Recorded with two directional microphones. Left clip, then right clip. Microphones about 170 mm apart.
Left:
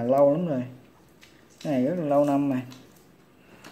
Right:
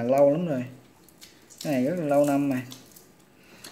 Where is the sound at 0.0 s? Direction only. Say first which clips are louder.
Even; centre (ahead or behind).